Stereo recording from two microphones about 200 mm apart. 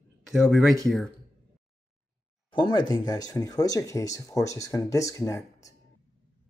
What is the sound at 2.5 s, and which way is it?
Speech, 20° left (ahead or behind).